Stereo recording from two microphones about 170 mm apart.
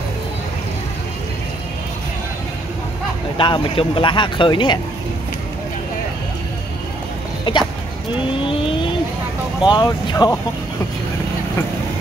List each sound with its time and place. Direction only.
3.3 s speech: 30° left (ahead or behind)
7.5 s speech: 30° left (ahead or behind)
9.6 s speech: 25° left (ahead or behind)